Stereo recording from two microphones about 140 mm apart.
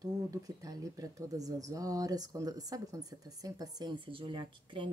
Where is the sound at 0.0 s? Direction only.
25° right (ahead or behind).